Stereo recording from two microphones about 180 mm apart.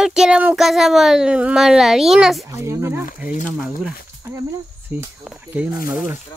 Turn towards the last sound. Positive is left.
turn(degrees=-5)  # may be behind; listen again after turning